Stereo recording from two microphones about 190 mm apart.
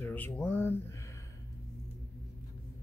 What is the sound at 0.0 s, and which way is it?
Speech, 10° left (ahead or behind).